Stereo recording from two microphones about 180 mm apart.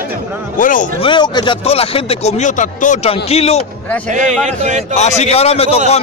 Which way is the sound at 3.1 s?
35° left (ahead or behind).